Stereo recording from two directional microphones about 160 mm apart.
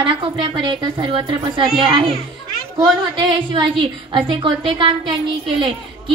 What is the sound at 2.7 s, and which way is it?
A woman's voice, 30° right (ahead or behind).